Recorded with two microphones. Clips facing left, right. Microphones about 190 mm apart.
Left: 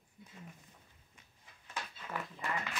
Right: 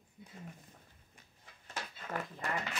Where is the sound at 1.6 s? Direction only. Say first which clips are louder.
Even; 45° right (ahead or behind).